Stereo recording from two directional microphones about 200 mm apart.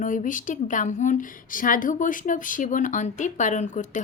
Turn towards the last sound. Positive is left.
turn(degrees=40)  # may be behind; listen again after turning